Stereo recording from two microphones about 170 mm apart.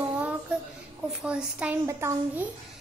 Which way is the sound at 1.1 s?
5° right (ahead or behind).